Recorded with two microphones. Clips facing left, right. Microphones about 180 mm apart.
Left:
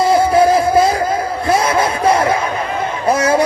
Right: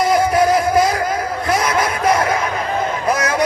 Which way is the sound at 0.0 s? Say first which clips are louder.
Left 3 dB; 30° left (ahead or behind).